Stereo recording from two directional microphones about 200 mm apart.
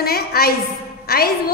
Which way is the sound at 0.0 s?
50° left (ahead or behind).